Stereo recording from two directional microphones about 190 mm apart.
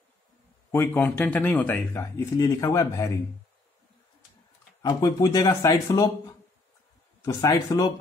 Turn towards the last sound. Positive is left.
turn(degrees=20)  # may be behind; listen again after turning